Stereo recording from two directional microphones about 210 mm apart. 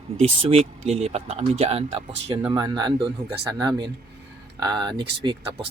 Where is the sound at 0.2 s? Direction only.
25° right (ahead or behind).